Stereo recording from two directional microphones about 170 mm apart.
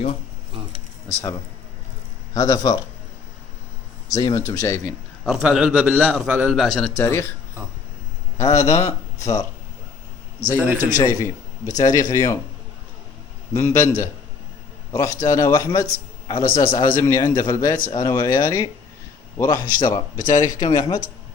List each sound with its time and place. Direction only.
2.3 s speech: 20° left (ahead or behind)
4.1 s speech: 20° left (ahead or behind)
4.9 s a man's voice: centre (ahead or behind)
6.9 s a man's voice: 15° left (ahead or behind)
8.4 s a man's voice: 20° left (ahead or behind)
10.6 s a man's voice: 15° right (ahead or behind)
10.9 s a man's voice: 20° left (ahead or behind)
13.5 s a man's voice: 15° left (ahead or behind)
20.3 s speech: 45° left (ahead or behind)
20.6 s speech: 25° left (ahead or behind)